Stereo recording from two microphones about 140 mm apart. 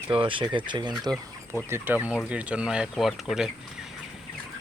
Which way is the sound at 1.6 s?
15° right (ahead or behind).